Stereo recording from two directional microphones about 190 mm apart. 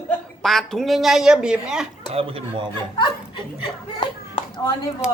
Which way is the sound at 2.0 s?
30° right (ahead or behind).